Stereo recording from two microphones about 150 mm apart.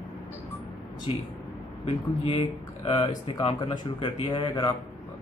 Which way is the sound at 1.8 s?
35° left (ahead or behind).